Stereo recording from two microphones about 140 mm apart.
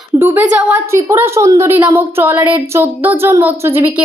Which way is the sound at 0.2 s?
15° right (ahead or behind).